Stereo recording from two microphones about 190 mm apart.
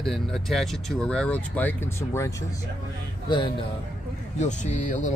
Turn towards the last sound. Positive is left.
turn(degrees=40)  # may be behind; listen again after turning